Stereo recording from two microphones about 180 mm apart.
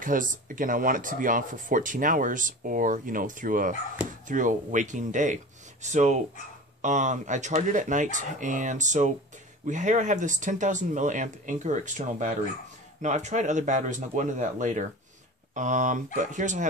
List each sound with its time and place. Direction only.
0.0 s speech: 50° right (ahead or behind)